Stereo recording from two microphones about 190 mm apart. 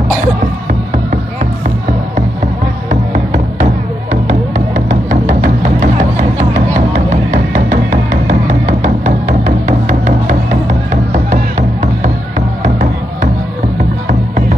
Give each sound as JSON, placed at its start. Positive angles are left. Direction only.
{"t": 0.7, "sound": "music", "side_deg": -45}
{"t": 7.2, "sound": "music", "side_deg": -45}